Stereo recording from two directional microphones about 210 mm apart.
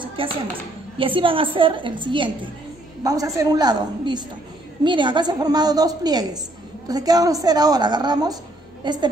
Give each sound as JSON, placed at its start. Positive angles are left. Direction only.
{"t": 0.0, "sound": "dishes", "side_deg": -25}
{"t": 0.9, "sound": "a woman's voice", "side_deg": -25}